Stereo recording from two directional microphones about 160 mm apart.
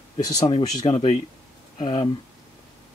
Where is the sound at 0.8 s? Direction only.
40° left (ahead or behind).